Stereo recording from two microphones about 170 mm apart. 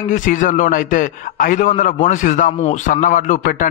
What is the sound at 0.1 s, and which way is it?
A man's voice, 50° left (ahead or behind).